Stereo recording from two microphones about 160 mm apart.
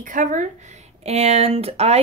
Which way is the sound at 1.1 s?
40° right (ahead or behind).